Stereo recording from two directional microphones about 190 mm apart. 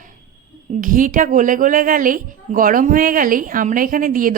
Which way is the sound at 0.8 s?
45° right (ahead or behind).